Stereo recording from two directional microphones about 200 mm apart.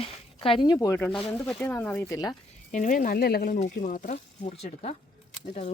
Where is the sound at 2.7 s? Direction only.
40° left (ahead or behind).